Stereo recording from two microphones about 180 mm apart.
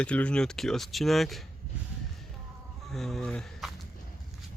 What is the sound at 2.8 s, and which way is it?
Speech, centre (ahead or behind).